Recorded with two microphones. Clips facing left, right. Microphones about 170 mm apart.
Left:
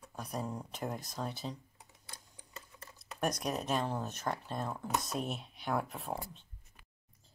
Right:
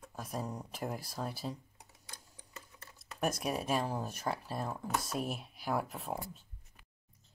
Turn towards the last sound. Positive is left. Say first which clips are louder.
# even
turn(degrees=0)  # may be behind; listen again after turning